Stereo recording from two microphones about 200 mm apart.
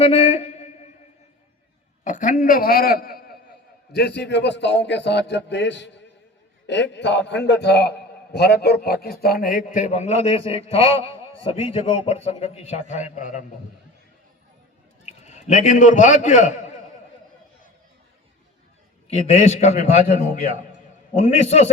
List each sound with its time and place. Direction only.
0.0 s a sound: 30° left (ahead or behind)
2.0 s a man's voice: 40° left (ahead or behind)
15.0 s a man's voice: 35° left (ahead or behind)
19.3 s a man's voice: 35° left (ahead or behind)